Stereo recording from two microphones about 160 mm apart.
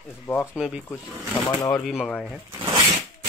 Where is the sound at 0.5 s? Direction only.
5° right (ahead or behind).